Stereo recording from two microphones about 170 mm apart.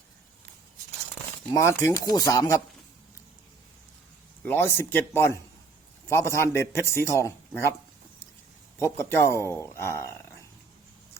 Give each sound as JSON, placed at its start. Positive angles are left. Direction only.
{"t": 1.5, "sound": "speech", "side_deg": 15}
{"t": 4.4, "sound": "speech", "side_deg": 15}
{"t": 8.8, "sound": "speech", "side_deg": 15}